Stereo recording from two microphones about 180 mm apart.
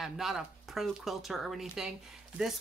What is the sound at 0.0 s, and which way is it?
Speech, centre (ahead or behind).